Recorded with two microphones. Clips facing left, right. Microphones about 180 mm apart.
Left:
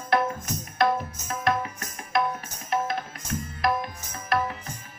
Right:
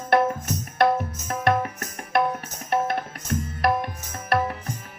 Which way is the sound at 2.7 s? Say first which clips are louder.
Right 3 dB; 60° right (ahead or behind).